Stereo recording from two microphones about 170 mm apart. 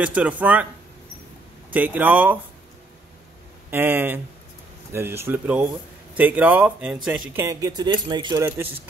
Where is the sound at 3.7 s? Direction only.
10° right (ahead or behind).